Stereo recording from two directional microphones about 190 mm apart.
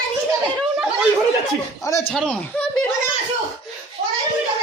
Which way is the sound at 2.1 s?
Centre (ahead or behind).